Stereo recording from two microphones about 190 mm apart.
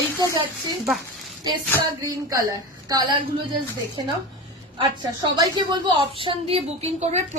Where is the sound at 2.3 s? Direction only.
20° right (ahead or behind).